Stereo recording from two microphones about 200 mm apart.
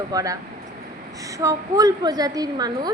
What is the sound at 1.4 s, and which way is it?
A woman's voice, 15° right (ahead or behind).